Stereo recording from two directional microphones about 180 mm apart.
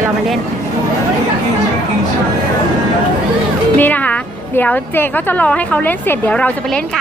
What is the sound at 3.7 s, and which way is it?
A woman's voice, 10° left (ahead or behind).